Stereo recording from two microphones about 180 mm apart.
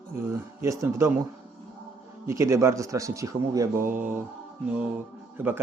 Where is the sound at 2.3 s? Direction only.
15° right (ahead or behind).